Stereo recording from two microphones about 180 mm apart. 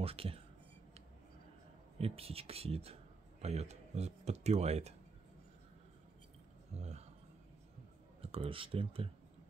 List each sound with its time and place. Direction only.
0.0 s speech: 30° right (ahead or behind)
2.0 s speech: 35° right (ahead or behind)
6.8 s speech: 35° right (ahead or behind)
8.2 s speech: 30° right (ahead or behind)